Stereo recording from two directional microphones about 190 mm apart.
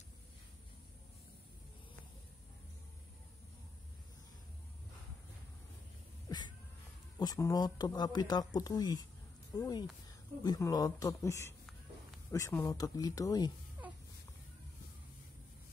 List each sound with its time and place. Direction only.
7.2 s speech: 20° left (ahead or behind)